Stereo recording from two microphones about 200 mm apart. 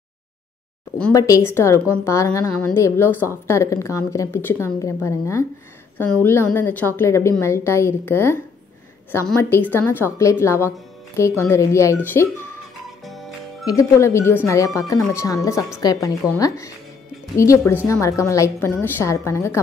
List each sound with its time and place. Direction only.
1.1 s speech: 15° left (ahead or behind)
13.0 s music: centre (ahead or behind)
13.7 s speech: 15° left (ahead or behind)